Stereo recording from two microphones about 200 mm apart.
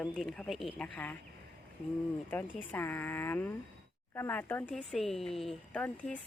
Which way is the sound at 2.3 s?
10° left (ahead or behind).